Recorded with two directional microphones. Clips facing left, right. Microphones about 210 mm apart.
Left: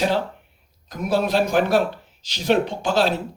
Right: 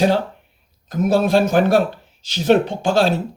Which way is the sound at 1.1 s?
50° right (ahead or behind).